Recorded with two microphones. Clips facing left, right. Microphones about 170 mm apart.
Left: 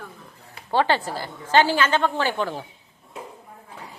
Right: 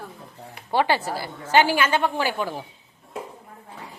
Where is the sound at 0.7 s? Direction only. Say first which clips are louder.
Even; 10° right (ahead or behind).